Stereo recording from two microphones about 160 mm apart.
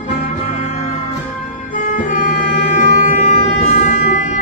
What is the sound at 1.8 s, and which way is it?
Wind instrument, 55° left (ahead or behind).